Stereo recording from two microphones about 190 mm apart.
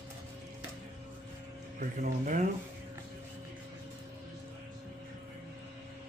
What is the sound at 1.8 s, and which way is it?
Speech, 45° right (ahead or behind).